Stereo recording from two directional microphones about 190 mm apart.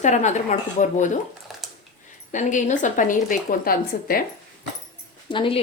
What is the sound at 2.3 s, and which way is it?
A woman's voice, 40° left (ahead or behind).